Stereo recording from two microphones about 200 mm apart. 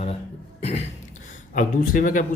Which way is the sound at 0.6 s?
35° left (ahead or behind).